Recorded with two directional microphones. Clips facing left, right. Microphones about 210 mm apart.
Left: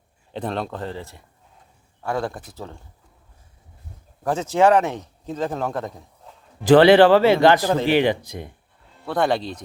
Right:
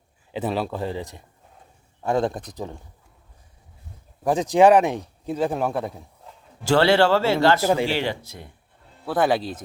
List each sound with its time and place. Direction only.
0.3 s speech: 5° right (ahead or behind)
4.2 s speech: 15° right (ahead or behind)
6.7 s speech: 15° left (ahead or behind)
7.6 s speech: 10° right (ahead or behind)
7.9 s speech: 15° left (ahead or behind)
9.0 s speech: 5° right (ahead or behind)